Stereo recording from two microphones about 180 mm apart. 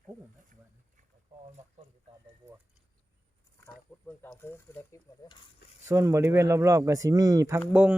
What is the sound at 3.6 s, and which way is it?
Speech, 10° left (ahead or behind).